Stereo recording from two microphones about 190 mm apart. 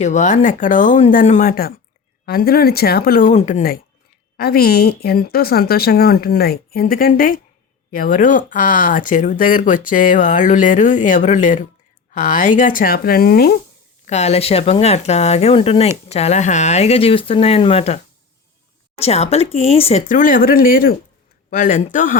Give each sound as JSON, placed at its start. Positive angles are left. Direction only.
{"t": 0.0, "sound": "speech", "side_deg": 40}
{"t": 14.0, "sound": "speech", "side_deg": 35}